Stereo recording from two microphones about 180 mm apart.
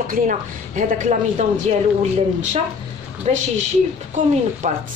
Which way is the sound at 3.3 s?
40° right (ahead or behind).